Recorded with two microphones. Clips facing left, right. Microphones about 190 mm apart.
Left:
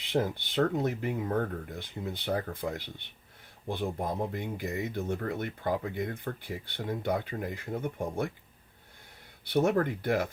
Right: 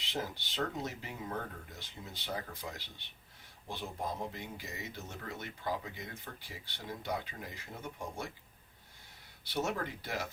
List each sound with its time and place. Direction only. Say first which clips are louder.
0.0 s speech: left 10 dB; 55° left (ahead or behind)
9.4 s speech: left 10 dB; 55° left (ahead or behind)